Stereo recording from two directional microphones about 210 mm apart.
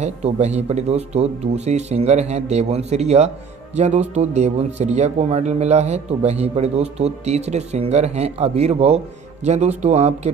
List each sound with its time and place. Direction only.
0.0 s speech: 30° right (ahead or behind)